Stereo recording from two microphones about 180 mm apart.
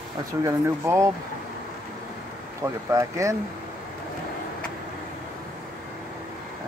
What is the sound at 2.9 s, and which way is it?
Speech, 15° right (ahead or behind).